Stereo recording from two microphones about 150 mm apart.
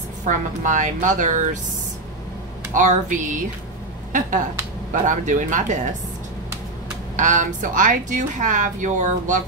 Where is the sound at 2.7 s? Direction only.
60° right (ahead or behind).